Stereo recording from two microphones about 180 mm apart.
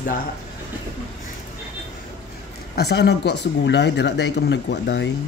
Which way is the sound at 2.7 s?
65° left (ahead or behind).